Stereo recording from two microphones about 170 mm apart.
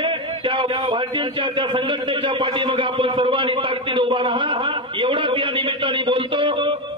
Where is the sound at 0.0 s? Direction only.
30° right (ahead or behind).